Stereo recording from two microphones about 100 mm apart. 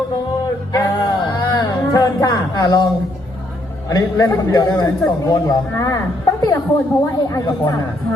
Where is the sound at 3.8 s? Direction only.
40° left (ahead or behind).